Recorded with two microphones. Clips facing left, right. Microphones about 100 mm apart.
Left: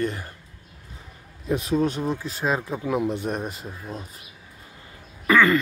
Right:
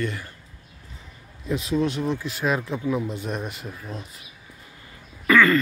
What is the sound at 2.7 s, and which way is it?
Speech, 55° left (ahead or behind).